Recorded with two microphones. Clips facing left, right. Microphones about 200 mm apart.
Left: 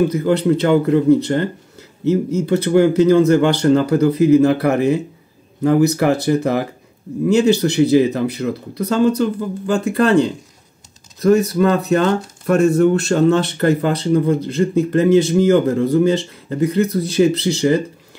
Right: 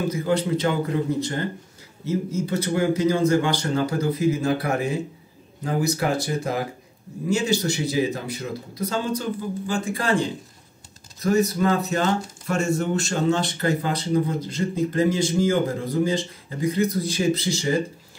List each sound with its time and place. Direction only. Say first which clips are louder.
0.1 s speech: left 7 dB; 65° left (ahead or behind)
2.0 s speech: left 9 dB; 65° left (ahead or behind)